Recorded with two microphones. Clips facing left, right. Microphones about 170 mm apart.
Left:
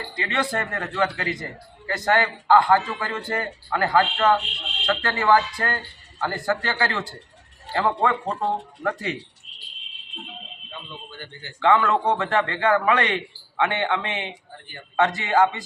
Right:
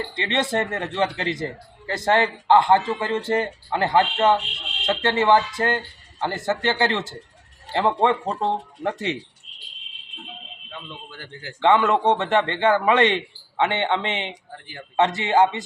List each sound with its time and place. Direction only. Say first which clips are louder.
0.2 s a man's voice: right 2 dB; 25° right (ahead or behind)
11.2 s a man's voice: right 2 dB; 90° right
11.6 s a man's voice: right 2 dB; 25° right (ahead or behind)